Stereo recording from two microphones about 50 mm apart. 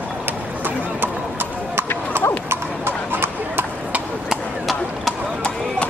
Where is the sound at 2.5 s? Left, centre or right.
Right.